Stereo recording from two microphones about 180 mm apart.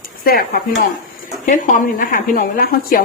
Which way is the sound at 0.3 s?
55° left (ahead or behind).